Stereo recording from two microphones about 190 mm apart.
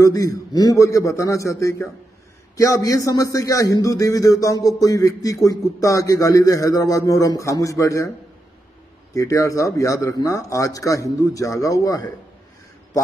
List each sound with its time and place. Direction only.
0.0 s a man's voice: 20° left (ahead or behind)
9.1 s a man's voice: 15° left (ahead or behind)